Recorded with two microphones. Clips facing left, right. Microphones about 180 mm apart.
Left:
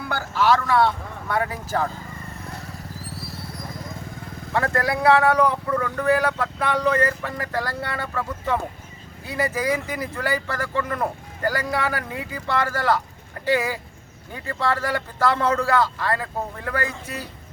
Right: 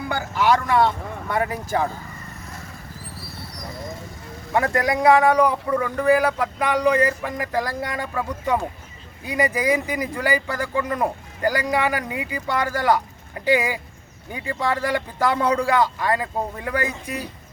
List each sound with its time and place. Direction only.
0.1 s speech: 15° right (ahead or behind)
4.5 s speech: 15° right (ahead or behind)